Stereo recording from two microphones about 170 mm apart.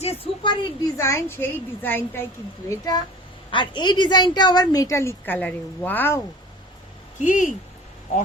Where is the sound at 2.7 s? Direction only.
20° left (ahead or behind).